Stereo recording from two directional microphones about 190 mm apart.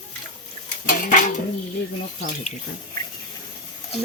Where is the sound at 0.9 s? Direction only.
40° left (ahead or behind).